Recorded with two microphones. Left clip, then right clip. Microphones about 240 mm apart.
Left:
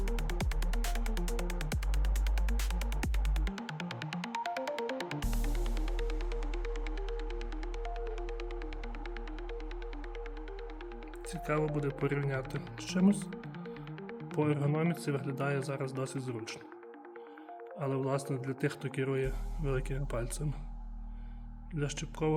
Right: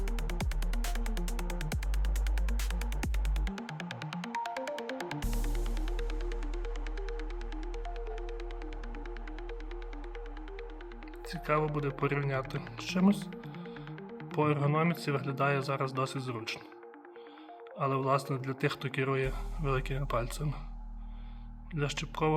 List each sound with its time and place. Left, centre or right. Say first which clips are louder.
0.0 s music: left 1 dB; centre
7.9 s music: left 1 dB; centre
11.3 s speech: right 3 dB; centre
17.7 s speech: right 5 dB; centre
21.7 s speech: right 3 dB; centre